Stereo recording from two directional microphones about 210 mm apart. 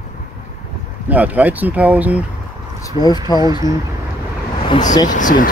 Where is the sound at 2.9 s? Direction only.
25° left (ahead or behind).